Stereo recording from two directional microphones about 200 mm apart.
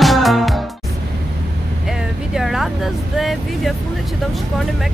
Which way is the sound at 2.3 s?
Centre (ahead or behind).